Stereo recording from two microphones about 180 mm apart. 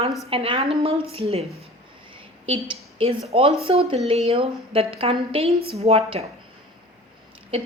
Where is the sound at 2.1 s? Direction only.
30° right (ahead or behind).